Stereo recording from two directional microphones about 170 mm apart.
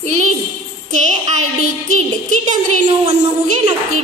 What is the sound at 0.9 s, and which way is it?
Speech, 45° right (ahead or behind).